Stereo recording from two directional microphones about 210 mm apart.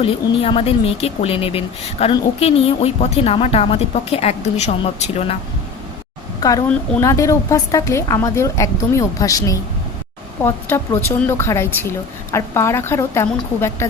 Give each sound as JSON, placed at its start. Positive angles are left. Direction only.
{"t": 0.0, "sound": "speech", "side_deg": 25}
{"t": 6.4, "sound": "a woman's voice", "side_deg": 15}